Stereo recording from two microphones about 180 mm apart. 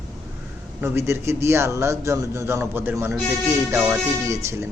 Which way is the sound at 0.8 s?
15° right (ahead or behind).